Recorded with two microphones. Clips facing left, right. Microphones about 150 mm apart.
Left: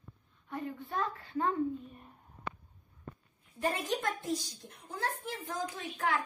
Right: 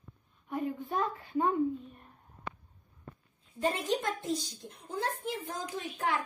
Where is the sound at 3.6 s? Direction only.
20° right (ahead or behind).